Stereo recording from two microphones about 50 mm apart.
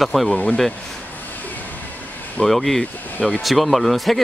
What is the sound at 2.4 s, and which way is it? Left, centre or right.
Speech, centre.